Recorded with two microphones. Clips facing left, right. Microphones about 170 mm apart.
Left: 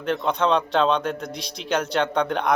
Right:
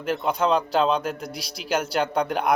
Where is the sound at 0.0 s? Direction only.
5° right (ahead or behind).